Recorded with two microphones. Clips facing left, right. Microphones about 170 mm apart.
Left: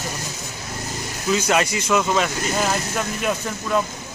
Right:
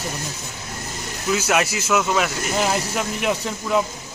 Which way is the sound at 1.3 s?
5° right (ahead or behind).